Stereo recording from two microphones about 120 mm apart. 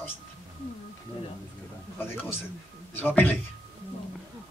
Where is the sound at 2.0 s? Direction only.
15° left (ahead or behind).